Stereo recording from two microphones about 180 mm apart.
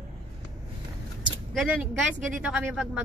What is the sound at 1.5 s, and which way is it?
Speech, 5° right (ahead or behind).